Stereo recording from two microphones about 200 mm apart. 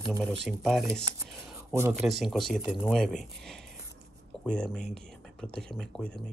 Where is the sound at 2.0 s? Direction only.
Centre (ahead or behind).